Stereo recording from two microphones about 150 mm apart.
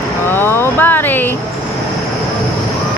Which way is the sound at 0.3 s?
15° left (ahead or behind).